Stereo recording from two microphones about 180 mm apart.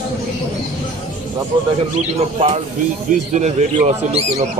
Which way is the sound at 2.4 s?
30° right (ahead or behind).